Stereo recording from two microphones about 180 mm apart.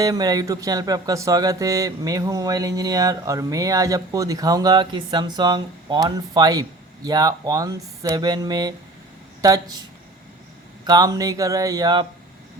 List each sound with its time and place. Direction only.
0.0 s speech: 20° right (ahead or behind)
10.8 s speech: 20° right (ahead or behind)